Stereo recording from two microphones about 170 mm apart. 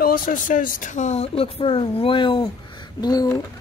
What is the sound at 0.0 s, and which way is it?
A woman's voice, 55° left (ahead or behind).